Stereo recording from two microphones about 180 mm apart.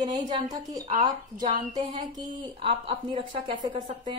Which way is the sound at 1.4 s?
40° right (ahead or behind).